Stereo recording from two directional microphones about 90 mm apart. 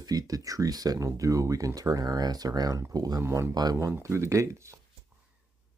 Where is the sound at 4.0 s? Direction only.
35° right (ahead or behind).